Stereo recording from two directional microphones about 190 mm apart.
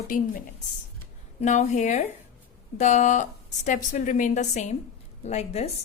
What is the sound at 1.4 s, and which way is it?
A woman's voice, 40° left (ahead or behind).